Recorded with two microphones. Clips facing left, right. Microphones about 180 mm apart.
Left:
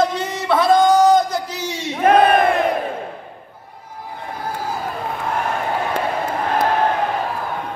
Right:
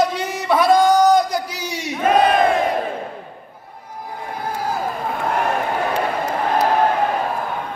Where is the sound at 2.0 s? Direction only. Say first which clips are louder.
Left 2 dB; 60° left (ahead or behind).